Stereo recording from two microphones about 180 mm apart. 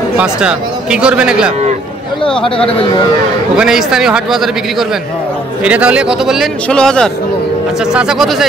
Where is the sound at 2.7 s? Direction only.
30° left (ahead or behind).